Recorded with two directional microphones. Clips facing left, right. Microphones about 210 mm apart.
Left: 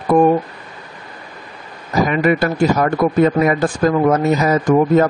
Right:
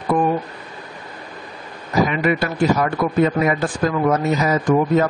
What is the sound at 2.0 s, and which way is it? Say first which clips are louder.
Speech: left 4 dB; 45° left (ahead or behind).